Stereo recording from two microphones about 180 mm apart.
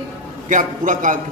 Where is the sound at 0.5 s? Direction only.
45° right (ahead or behind).